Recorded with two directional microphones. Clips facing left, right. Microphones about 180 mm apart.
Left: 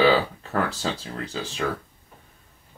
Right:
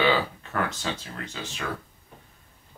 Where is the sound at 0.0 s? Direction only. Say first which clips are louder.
Left 4 dB; 35° left (ahead or behind).